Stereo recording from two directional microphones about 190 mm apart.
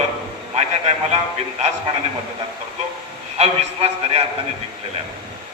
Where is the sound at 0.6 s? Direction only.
35° right (ahead or behind).